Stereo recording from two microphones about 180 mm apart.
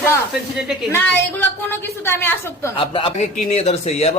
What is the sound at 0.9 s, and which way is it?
A woman's voice, 10° left (ahead or behind).